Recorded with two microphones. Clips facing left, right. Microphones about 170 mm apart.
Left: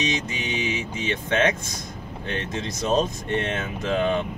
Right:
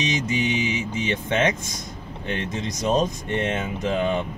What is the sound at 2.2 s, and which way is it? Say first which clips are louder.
Speech: right 2 dB; 15° right (ahead or behind).